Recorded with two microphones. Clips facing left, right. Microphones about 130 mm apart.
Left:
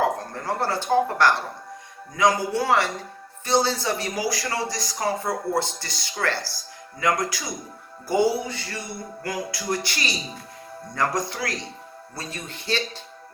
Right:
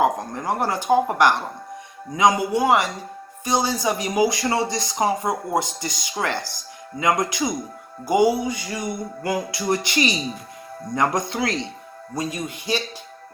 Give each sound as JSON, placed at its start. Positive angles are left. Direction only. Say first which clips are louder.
{"t": 0.0, "sound": "speech", "louder": "right 3 dB", "side_deg": -15}